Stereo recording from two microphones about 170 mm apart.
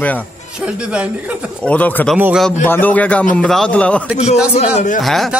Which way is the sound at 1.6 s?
10° left (ahead or behind).